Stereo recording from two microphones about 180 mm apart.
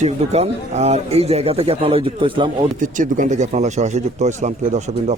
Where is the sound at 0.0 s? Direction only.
35° right (ahead or behind).